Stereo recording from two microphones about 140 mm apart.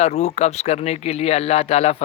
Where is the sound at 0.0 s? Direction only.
55° left (ahead or behind).